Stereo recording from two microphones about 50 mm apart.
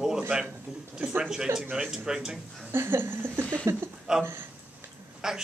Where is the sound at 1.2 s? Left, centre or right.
Centre.